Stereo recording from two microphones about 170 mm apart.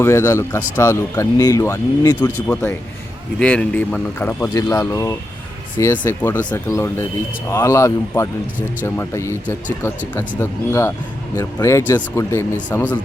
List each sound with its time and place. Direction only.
0.0 s speech: 15° left (ahead or behind)